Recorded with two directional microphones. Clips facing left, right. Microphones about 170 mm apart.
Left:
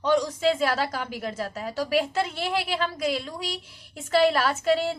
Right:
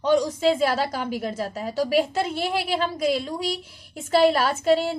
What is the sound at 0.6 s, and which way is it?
A woman's voice, 25° right (ahead or behind).